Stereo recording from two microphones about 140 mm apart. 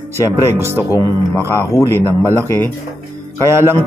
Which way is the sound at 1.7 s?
20° left (ahead or behind).